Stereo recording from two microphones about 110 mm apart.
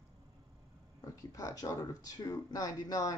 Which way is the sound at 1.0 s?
30° left (ahead or behind).